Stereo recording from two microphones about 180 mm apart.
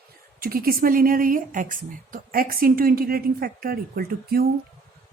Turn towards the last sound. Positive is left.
turn(degrees=-55)  # may be behind; listen again after turning